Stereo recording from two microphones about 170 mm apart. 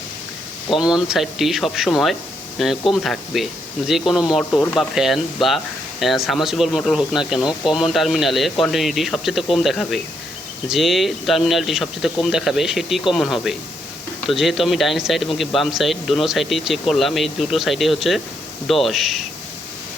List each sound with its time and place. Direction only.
0.8 s speech: 5° right (ahead or behind)